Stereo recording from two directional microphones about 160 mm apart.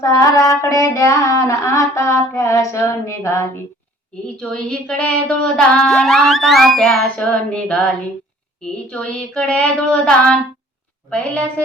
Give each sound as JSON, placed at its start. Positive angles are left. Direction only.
{"t": 0.0, "sound": "child singing", "side_deg": 20}
{"t": 4.4, "sound": "music", "side_deg": 5}
{"t": 8.9, "sound": "music", "side_deg": 5}
{"t": 11.1, "sound": "a woman's voice", "side_deg": 10}